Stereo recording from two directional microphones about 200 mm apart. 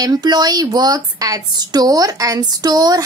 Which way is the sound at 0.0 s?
20° right (ahead or behind).